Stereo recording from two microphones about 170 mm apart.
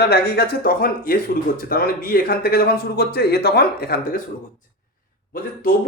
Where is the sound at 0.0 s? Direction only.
70° left (ahead or behind).